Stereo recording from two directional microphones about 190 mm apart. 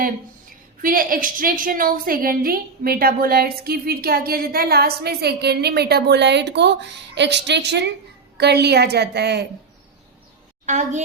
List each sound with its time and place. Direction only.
0.8 s a woman's voice: 50° right (ahead or behind)
10.7 s a woman's voice: 40° right (ahead or behind)